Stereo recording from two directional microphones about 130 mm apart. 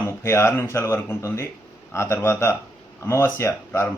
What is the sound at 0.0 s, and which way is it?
A man's voice, 20° left (ahead or behind).